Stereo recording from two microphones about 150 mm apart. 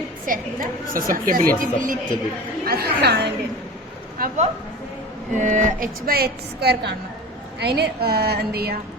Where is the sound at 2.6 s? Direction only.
90° right.